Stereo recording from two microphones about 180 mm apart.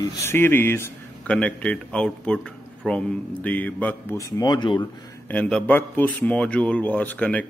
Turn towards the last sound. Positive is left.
turn(degrees=10)  # may be behind; listen again after turning